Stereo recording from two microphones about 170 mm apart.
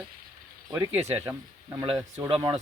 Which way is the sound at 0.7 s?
10° right (ahead or behind).